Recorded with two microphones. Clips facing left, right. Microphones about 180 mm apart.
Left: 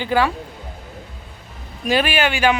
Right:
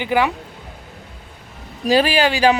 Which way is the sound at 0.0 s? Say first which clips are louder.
Even; 20° right (ahead or behind).